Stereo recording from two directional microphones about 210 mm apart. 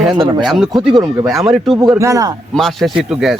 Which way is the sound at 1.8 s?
15° right (ahead or behind).